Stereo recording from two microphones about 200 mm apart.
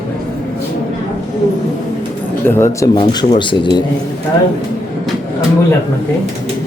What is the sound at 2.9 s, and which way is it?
Speech, 25° left (ahead or behind).